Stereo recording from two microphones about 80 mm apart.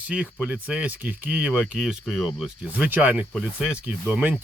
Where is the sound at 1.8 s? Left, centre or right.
Centre.